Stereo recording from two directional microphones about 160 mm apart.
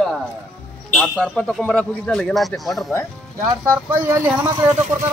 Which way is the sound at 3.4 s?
15° right (ahead or behind).